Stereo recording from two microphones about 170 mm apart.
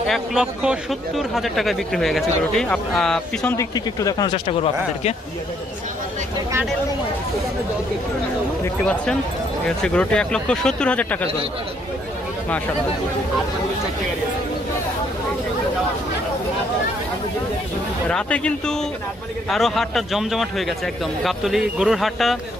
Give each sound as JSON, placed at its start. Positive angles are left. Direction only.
{"t": 0.0, "sound": "speech", "side_deg": 0}
{"t": 3.5, "sound": "speech", "side_deg": 20}
{"t": 4.5, "sound": "speech", "side_deg": 35}
{"t": 8.6, "sound": "speech", "side_deg": 5}
{"t": 18.0, "sound": "speech", "side_deg": 5}